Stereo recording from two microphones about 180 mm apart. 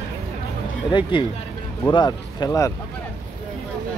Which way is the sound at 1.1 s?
30° left (ahead or behind).